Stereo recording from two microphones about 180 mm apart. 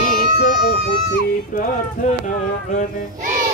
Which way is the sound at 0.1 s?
55° left (ahead or behind).